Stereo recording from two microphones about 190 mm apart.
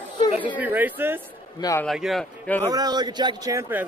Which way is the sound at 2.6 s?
20° right (ahead or behind).